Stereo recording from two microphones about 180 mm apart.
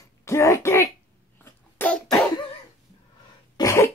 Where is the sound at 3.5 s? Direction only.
15° left (ahead or behind).